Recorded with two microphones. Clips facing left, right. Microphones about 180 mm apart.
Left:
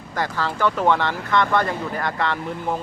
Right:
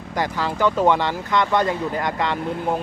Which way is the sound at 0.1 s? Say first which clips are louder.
Right 1 dB; 15° right (ahead or behind).